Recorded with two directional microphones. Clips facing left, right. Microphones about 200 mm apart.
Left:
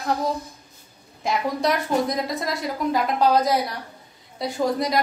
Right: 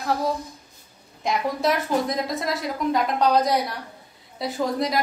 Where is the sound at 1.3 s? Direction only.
Centre (ahead or behind).